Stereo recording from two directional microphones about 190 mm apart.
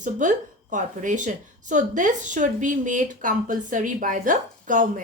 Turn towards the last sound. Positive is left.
turn(degrees=-45)  # may be behind; listen again after turning